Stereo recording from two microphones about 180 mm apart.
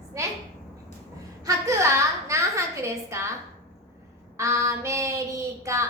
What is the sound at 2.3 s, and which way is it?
Speech, 15° right (ahead or behind).